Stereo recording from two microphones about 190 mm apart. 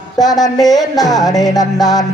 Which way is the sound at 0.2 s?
20° left (ahead or behind).